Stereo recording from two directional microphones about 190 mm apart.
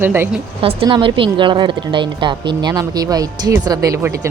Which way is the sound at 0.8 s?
25° right (ahead or behind).